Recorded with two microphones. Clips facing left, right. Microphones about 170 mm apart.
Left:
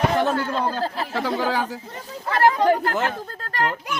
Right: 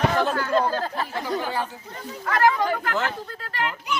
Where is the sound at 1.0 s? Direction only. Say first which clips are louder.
Left 3 dB; 90° left.